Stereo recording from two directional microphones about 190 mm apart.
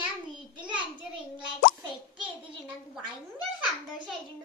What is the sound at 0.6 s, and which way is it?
Speech, 25° right (ahead or behind).